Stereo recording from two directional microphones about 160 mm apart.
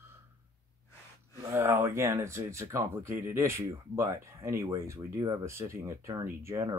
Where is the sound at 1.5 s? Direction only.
15° right (ahead or behind).